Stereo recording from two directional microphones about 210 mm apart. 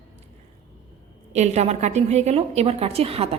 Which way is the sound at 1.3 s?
30° right (ahead or behind).